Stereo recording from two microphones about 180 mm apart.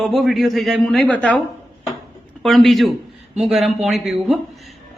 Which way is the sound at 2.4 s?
Centre (ahead or behind).